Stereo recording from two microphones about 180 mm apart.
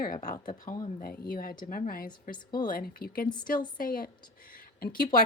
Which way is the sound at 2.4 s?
25° left (ahead or behind).